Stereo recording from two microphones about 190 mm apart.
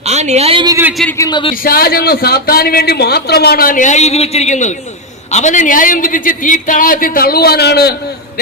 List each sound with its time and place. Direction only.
0.0 s speech: 35° right (ahead or behind)
1.1 s speech: 20° left (ahead or behind)
1.6 s a man's voice: 50° left (ahead or behind)